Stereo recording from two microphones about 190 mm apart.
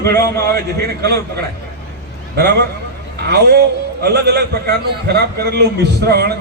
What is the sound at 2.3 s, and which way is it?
A man's voice, 60° right (ahead or behind).